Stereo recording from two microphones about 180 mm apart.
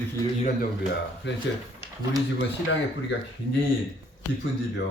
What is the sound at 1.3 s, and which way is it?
Speech, 90° left.